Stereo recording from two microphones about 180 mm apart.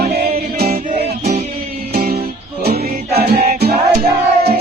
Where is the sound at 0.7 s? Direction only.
40° right (ahead or behind).